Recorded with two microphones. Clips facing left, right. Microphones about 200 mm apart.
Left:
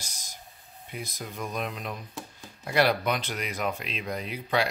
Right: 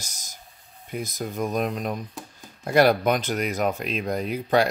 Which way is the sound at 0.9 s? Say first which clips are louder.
Right 8 dB; 45° right (ahead or behind).